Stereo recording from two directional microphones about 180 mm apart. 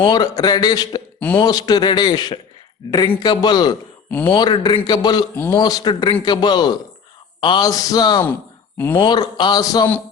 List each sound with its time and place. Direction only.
0.0 s speech: 25° left (ahead or behind)
5.4 s speech: 10° left (ahead or behind)
5.6 s speech: 25° left (ahead or behind)